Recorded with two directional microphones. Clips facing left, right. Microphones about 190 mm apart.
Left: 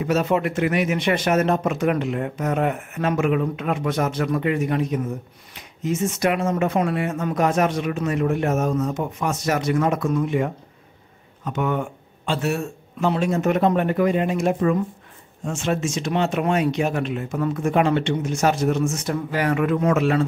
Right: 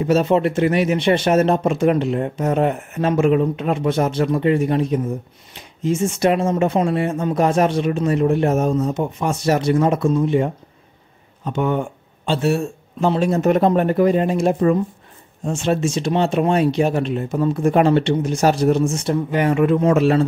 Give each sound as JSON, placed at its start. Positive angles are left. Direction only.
{"t": 0.0, "sound": "speech", "side_deg": -30}